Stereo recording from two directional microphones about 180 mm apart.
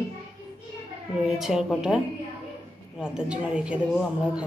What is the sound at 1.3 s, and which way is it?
A man's voice, centre (ahead or behind).